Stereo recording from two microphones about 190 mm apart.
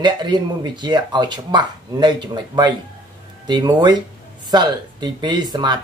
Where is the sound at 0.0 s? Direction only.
25° right (ahead or behind).